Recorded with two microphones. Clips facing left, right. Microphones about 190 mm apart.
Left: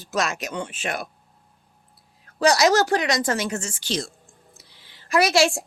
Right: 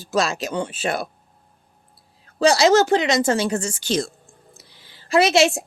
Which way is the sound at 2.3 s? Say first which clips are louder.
Right 3 dB; 30° right (ahead or behind).